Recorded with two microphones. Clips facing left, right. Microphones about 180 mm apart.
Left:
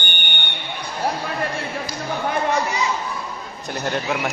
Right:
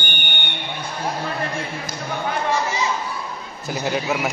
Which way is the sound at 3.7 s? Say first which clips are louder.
Right 1 dB; 5° right (ahead or behind).